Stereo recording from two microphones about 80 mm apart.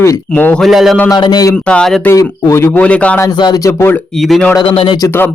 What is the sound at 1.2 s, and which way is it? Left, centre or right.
Speech, left.